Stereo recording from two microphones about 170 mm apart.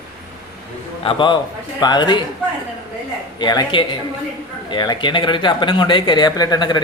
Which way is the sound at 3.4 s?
25° left (ahead or behind).